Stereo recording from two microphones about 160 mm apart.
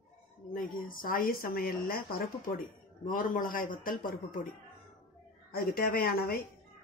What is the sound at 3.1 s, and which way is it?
Speech, 60° left (ahead or behind).